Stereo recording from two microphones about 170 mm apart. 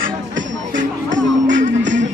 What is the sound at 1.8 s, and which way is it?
Music, 90° right.